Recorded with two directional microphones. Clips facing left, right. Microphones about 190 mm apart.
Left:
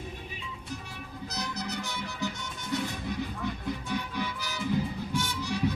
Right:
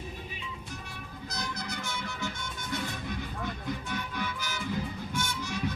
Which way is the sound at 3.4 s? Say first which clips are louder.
Left 2 dB; 35° left (ahead or behind).